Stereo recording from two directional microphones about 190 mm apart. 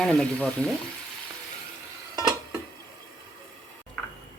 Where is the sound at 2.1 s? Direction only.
20° right (ahead or behind).